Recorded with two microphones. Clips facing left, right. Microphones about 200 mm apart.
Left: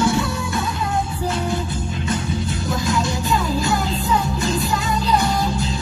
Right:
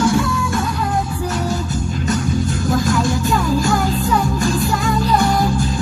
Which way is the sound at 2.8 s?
45° right (ahead or behind).